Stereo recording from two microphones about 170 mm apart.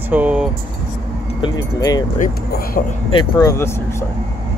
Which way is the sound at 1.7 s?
20° left (ahead or behind).